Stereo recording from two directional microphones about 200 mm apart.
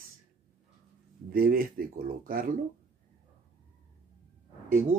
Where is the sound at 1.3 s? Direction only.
45° right (ahead or behind).